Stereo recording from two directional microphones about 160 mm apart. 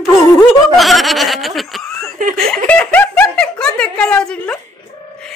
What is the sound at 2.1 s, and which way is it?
Speech, 55° right (ahead or behind).